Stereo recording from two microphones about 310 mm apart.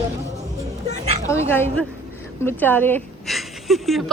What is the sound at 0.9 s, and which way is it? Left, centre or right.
Speech, centre.